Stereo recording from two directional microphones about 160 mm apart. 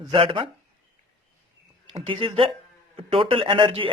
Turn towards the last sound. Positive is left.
turn(degrees=-35)  # may be behind; listen again after turning